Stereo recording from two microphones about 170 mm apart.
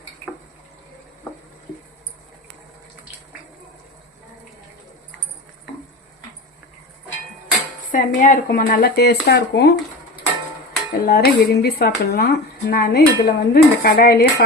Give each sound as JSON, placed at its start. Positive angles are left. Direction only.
{"t": 7.9, "sound": "a woman's voice", "side_deg": 50}
{"t": 11.0, "sound": "speech", "side_deg": 65}